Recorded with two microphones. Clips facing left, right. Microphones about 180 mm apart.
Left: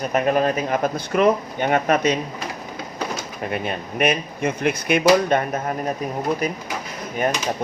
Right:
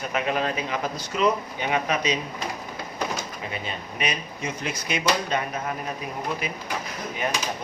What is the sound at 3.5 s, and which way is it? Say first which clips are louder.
Speech: left 7 dB; 55° left (ahead or behind).